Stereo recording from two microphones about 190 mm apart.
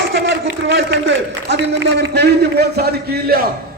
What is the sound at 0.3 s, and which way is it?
A man's voice, 70° right (ahead or behind).